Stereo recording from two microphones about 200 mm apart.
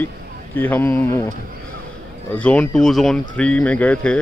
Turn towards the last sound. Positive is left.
turn(degrees=5)  # may be behind; listen again after turning